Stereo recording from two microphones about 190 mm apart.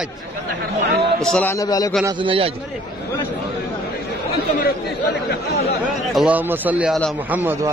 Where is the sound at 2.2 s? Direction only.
30° right (ahead or behind).